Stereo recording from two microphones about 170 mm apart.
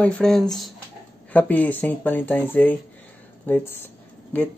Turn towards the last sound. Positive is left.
turn(degrees=10)  # may be behind; listen again after turning